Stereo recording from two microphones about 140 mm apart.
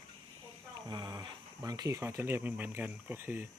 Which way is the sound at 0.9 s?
30° right (ahead or behind).